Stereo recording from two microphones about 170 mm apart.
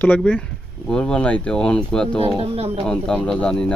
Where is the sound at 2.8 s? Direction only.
5° left (ahead or behind).